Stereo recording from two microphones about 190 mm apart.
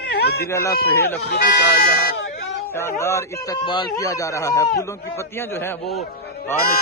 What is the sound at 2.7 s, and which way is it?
Speech, 15° left (ahead or behind).